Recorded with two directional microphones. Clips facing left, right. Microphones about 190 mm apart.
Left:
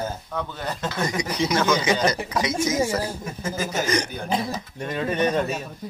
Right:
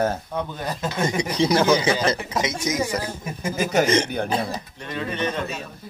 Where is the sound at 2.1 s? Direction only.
20° right (ahead or behind).